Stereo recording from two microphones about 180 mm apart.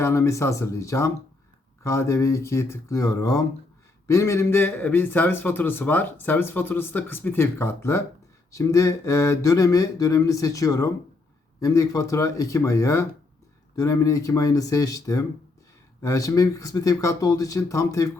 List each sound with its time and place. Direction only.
0.0 s a man's voice: 15° left (ahead or behind)